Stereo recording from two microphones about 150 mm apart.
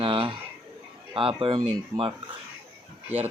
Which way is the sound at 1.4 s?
35° right (ahead or behind).